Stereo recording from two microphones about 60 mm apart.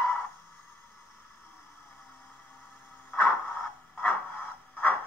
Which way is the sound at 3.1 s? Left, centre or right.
Left.